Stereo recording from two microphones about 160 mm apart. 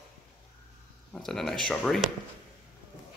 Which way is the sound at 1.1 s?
5° left (ahead or behind).